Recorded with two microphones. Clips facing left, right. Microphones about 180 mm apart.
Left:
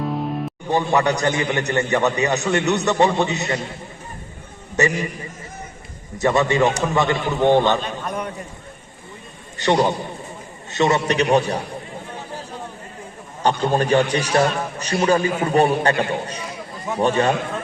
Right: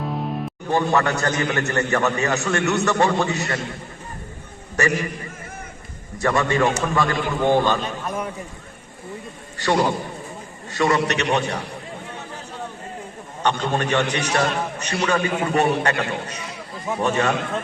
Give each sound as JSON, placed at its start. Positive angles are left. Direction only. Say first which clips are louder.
{"t": 0.0, "sound": "music", "louder": "left 2 dB", "side_deg": 0}
{"t": 0.7, "sound": "a man's voice", "louder": "left 1 dB", "side_deg": 15}
{"t": 4.8, "sound": "a man's voice", "louder": "left 2 dB", "side_deg": 20}
{"t": 6.1, "sound": "a man's voice", "louder": "left 2 dB", "side_deg": 20}
{"t": 8.0, "sound": "a sound", "louder": "even", "side_deg": -5}
{"t": 9.6, "sound": "a man's voice", "louder": "left 2 dB", "side_deg": 20}
{"t": 13.4, "sound": "a man's voice", "louder": "left 3 dB", "side_deg": 35}